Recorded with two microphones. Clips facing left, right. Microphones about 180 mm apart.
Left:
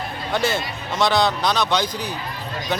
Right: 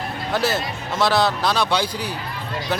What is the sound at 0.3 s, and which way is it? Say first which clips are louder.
Speech: even; 5° right (ahead or behind).